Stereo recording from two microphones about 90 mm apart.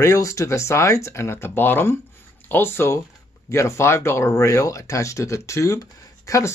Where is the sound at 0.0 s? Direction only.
35° left (ahead or behind).